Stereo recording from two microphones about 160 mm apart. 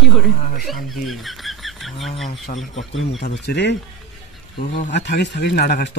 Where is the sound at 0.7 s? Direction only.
Centre (ahead or behind).